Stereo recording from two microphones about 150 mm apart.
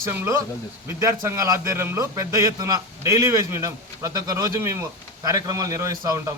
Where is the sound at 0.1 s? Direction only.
20° right (ahead or behind).